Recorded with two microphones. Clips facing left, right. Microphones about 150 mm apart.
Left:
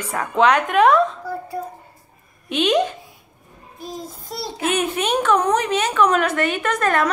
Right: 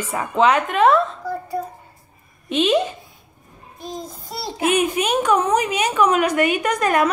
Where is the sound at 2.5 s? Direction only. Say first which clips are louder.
Even; centre (ahead or behind).